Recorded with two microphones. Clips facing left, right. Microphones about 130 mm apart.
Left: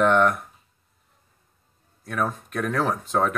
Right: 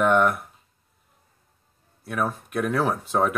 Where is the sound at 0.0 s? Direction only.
5° right (ahead or behind).